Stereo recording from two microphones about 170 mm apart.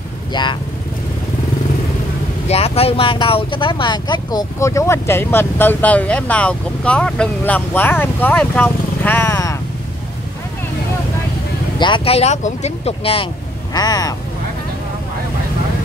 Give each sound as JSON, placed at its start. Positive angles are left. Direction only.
{"t": 0.3, "sound": "speech", "side_deg": 25}
{"t": 2.4, "sound": "speech", "side_deg": 35}
{"t": 11.8, "sound": "speech", "side_deg": 30}
{"t": 13.7, "sound": "speech", "side_deg": 20}